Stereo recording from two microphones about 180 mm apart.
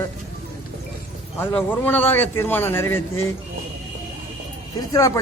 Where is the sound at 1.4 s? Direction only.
10° left (ahead or behind).